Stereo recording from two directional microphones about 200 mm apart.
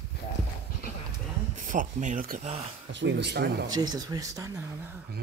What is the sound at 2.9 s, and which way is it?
Speech, 60° right (ahead or behind).